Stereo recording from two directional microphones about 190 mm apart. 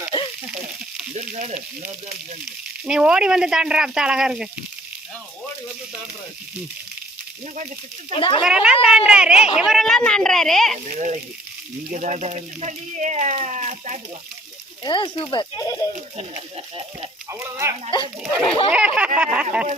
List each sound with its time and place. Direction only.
1.1 s speech: 40° right (ahead or behind)
2.8 s speech: 5° right (ahead or behind)
8.1 s speech: 30° left (ahead or behind)
8.4 s speech: 5° right (ahead or behind)
10.8 s speech: 40° right (ahead or behind)
14.8 s speech: 25° left (ahead or behind)
17.2 s speech: 15° right (ahead or behind)
18.2 s speech: 5° right (ahead or behind)